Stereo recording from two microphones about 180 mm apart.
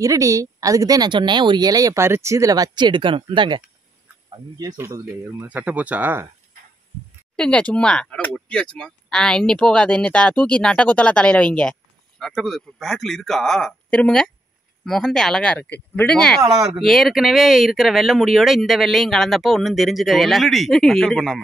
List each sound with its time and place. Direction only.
0.0 s speech: 20° right (ahead or behind)
7.3 s speech: 5° left (ahead or behind)